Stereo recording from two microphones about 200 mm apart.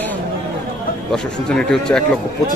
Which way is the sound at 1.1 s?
5° left (ahead or behind).